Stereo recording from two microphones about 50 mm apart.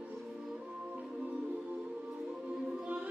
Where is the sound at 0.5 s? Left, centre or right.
Centre.